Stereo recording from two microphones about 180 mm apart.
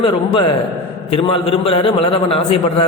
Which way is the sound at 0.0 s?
30° left (ahead or behind).